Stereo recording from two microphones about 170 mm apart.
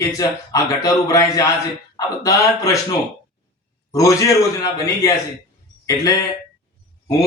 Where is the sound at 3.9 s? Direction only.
20° left (ahead or behind).